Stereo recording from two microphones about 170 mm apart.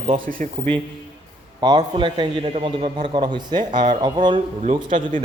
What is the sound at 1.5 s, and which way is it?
A man's voice, 25° right (ahead or behind).